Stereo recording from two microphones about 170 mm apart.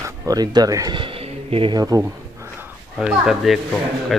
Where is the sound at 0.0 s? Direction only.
20° right (ahead or behind).